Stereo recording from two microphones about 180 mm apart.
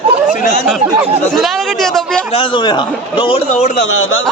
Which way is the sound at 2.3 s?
25° left (ahead or behind).